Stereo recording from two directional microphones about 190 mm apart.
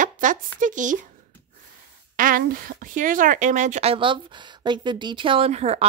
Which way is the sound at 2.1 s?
45° right (ahead or behind).